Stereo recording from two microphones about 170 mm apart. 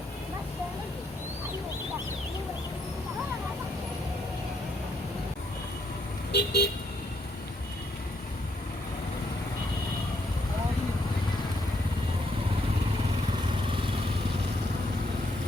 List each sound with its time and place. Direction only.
6.3 s vehicle: 70° left (ahead or behind)